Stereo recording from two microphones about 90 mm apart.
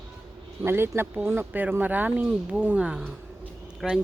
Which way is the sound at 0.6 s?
25° right (ahead or behind).